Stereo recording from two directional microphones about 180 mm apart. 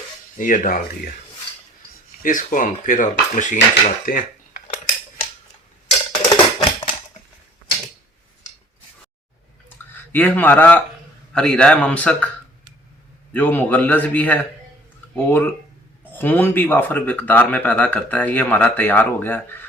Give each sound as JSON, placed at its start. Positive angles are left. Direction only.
{"t": 0.3, "sound": "cutlery", "side_deg": 45}
{"t": 2.2, "sound": "cutlery", "side_deg": 45}
{"t": 6.1, "sound": "music", "side_deg": 25}
{"t": 9.9, "sound": "a man's voice", "side_deg": 10}
{"t": 13.3, "sound": "speech", "side_deg": 10}